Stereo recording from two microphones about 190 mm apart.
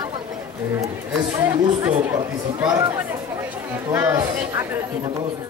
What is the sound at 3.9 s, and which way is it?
Speech, 10° right (ahead or behind).